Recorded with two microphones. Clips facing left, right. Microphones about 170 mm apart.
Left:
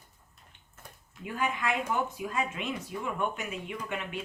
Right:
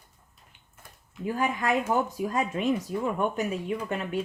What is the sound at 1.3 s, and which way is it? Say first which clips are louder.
Speech: right 5 dB; 40° right (ahead or behind).